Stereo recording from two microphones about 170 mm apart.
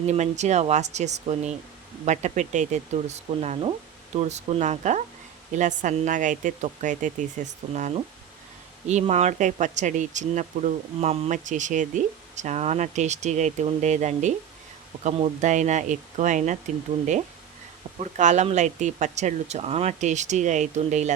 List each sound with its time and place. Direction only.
0.1 s speech: 45° right (ahead or behind)
18.0 s speech: 45° right (ahead or behind)